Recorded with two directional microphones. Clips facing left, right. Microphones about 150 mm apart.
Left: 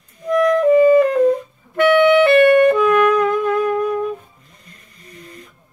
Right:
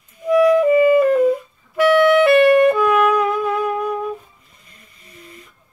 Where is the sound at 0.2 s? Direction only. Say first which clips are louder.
Right 2 dB; 5° right (ahead or behind).